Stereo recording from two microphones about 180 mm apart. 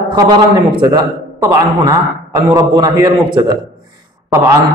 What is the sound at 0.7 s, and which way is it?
A man's voice, 25° right (ahead or behind).